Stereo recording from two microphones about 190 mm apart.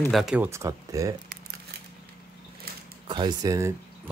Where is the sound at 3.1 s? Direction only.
25° right (ahead or behind).